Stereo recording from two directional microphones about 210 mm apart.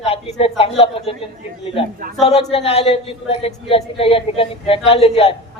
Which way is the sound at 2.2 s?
30° left (ahead or behind).